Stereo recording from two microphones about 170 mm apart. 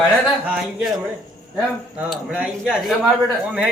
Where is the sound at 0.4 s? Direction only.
5° right (ahead or behind).